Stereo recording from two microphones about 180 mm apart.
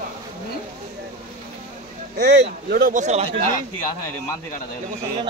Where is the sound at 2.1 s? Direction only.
65° right (ahead or behind); by 3.4 s 35° right (ahead or behind).